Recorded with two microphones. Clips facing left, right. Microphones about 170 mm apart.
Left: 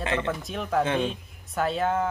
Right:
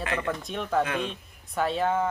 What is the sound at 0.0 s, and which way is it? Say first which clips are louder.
Speech: left 2 dB; 25° left (ahead or behind).